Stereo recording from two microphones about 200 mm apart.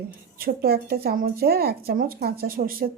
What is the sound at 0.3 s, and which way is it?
Speech, 50° right (ahead or behind).